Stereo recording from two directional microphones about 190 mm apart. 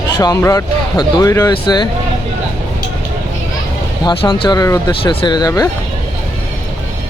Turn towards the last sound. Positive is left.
turn(degrees=20)  # may be behind; listen again after turning